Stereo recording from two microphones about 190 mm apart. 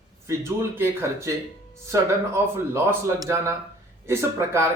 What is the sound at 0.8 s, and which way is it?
Speech, 15° right (ahead or behind).